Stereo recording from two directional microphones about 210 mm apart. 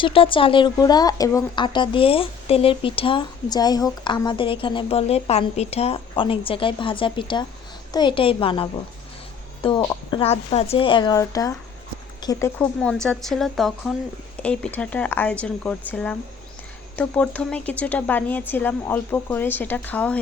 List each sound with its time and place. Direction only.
0.0 s speech: 25° left (ahead or behind)
12.5 s speech: 5° left (ahead or behind)